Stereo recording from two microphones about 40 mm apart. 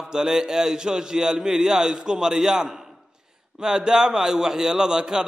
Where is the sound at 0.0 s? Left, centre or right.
Centre.